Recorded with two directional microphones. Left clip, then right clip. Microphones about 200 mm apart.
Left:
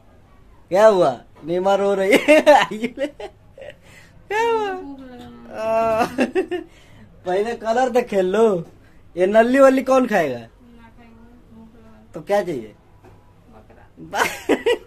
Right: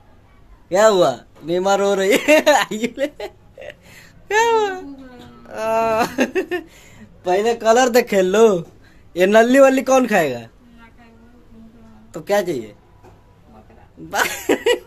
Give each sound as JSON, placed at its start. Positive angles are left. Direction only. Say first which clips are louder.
{"t": 0.7, "sound": "a man's voice", "louder": "even", "side_deg": 0}
{"t": 5.5, "sound": "a sound", "louder": "right 1 dB", "side_deg": -5}
{"t": 7.2, "sound": "a man's voice", "louder": "right 6 dB", "side_deg": -25}
{"t": 12.1, "sound": "a man's voice", "louder": "right 2 dB", "side_deg": -5}
{"t": 14.1, "sound": "a man's voice", "louder": "right 1 dB", "side_deg": -10}